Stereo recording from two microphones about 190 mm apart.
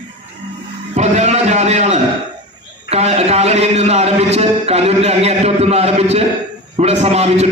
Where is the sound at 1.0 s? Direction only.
35° right (ahead or behind).